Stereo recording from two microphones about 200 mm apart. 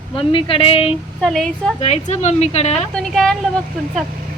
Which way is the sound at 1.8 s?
35° left (ahead or behind).